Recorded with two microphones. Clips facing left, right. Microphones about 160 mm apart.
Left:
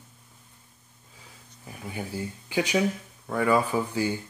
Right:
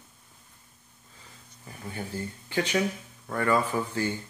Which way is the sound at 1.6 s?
10° left (ahead or behind).